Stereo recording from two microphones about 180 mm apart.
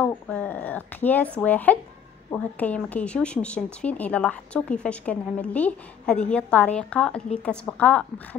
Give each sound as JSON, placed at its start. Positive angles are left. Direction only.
{"t": 0.0, "sound": "a woman's voice", "side_deg": 10}